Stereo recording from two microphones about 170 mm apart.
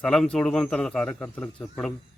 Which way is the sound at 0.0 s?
5° left (ahead or behind).